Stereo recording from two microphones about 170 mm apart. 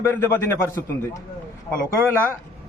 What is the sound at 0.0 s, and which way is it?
Speech, 15° left (ahead or behind).